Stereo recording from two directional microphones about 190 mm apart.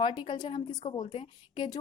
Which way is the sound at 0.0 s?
25° left (ahead or behind).